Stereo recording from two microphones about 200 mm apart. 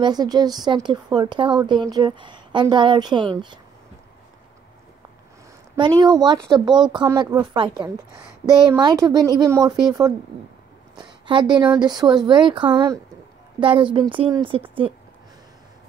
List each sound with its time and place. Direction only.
0.0 s speech: 20° right (ahead or behind)
5.8 s a woman's voice: 20° right (ahead or behind)